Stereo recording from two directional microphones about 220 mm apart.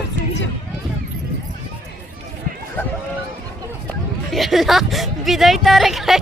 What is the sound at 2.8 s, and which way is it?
Speech, 10° left (ahead or behind).